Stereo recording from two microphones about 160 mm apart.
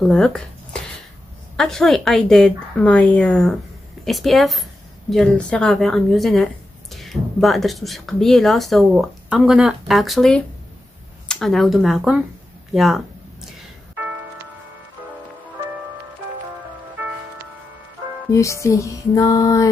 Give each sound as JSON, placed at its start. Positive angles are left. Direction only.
{"t": 0.0, "sound": "speech", "side_deg": 5}
{"t": 18.3, "sound": "music", "side_deg": 20}